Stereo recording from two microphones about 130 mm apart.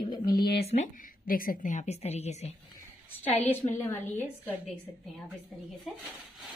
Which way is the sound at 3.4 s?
15° left (ahead or behind).